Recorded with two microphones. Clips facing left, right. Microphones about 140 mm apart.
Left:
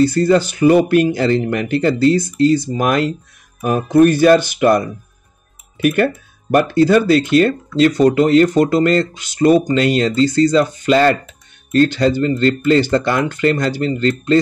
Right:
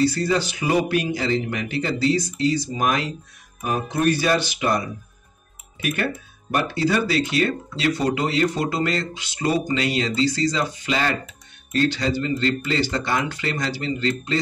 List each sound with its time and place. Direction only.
0.0 s speech: 50° left (ahead or behind)